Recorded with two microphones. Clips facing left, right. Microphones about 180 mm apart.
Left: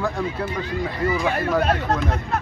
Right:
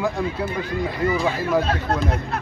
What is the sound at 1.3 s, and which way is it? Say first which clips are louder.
Speech: left 1 dB; 60° left (ahead or behind).